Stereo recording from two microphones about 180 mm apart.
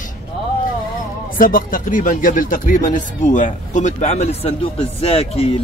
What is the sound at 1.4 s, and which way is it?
Speech, 50° left (ahead or behind).